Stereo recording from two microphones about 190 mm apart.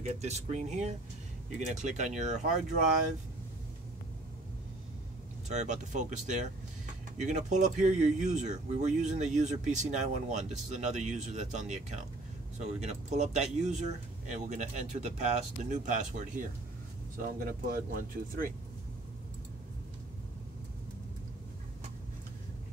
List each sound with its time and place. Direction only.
0.0 s speech: 35° right (ahead or behind)
5.5 s speech: 40° right (ahead or behind)